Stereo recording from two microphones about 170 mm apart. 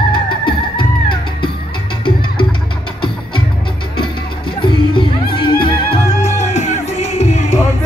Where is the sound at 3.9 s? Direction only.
30° left (ahead or behind).